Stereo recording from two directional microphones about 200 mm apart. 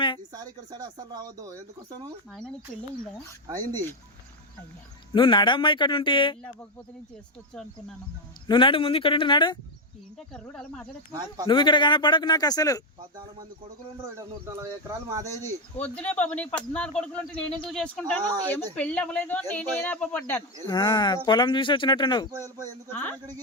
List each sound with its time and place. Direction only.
0.7 s speech: 20° right (ahead or behind)
3.4 s speech: 20° right (ahead or behind)
5.1 s speech: 25° left (ahead or behind)
8.4 s speech: 25° left (ahead or behind)
10.2 s speech: 5° left (ahead or behind)
11.4 s speech: 25° left (ahead or behind)
14.4 s speech: 15° right (ahead or behind)
15.4 s speech: 5° left (ahead or behind)
20.7 s speech: 20° left (ahead or behind)
22.3 s speech: 15° right (ahead or behind)
22.9 s speech: 10° left (ahead or behind)